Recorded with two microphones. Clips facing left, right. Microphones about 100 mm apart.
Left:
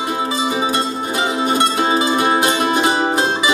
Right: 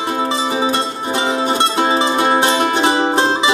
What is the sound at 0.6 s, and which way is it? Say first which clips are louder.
Music: right 1 dB; 30° right (ahead or behind).